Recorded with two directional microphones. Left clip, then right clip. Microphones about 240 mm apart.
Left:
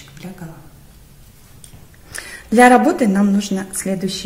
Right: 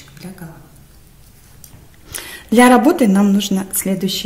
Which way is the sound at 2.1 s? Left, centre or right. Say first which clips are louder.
Right 2 dB; right.